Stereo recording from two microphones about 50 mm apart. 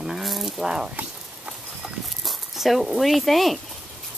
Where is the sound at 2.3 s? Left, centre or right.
Centre.